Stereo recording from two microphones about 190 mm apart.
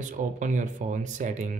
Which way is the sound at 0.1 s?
40° right (ahead or behind).